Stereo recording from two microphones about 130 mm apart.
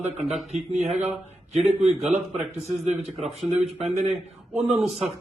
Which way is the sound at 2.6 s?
60° right (ahead or behind).